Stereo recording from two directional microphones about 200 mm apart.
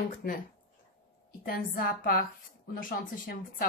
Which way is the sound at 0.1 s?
45° left (ahead or behind).